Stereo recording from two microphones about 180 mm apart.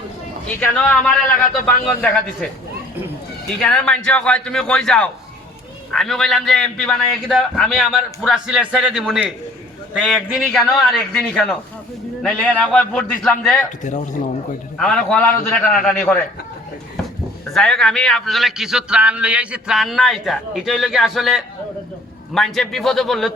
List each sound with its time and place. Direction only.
0.8 s a man's voice: 5° left (ahead or behind)
3.6 s a man's voice: 5° left (ahead or behind)
13.8 s a man's voice: 40° left (ahead or behind)
14.8 s a man's voice: 5° left (ahead or behind)
17.5 s a man's voice: 5° left (ahead or behind)